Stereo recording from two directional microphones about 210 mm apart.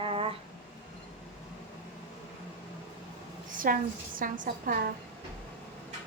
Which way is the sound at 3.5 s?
40° right (ahead or behind).